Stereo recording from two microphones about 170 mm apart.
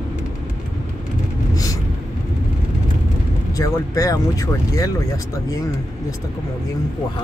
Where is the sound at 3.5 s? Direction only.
20° left (ahead or behind).